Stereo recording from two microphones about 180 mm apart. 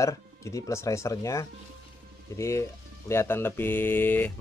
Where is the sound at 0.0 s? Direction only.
15° left (ahead or behind).